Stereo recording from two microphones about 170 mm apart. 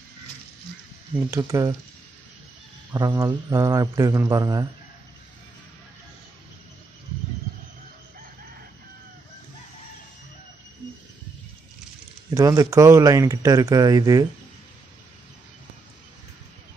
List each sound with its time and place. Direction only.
1.3 s speech: 20° right (ahead or behind)
2.9 s speech: 20° right (ahead or behind)
12.4 s speech: 20° right (ahead or behind)